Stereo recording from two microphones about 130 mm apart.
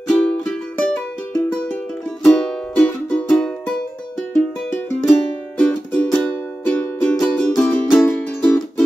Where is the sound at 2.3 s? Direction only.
10° left (ahead or behind).